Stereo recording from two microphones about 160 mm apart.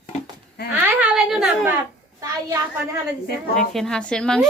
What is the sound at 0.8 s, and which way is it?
Speech, 5° right (ahead or behind).